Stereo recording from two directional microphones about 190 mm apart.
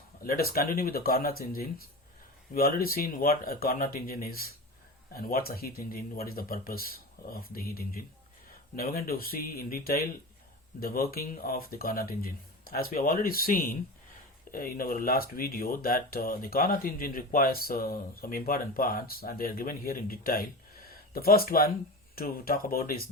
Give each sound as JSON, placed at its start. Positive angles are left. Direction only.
{"t": 0.3, "sound": "speech", "side_deg": 50}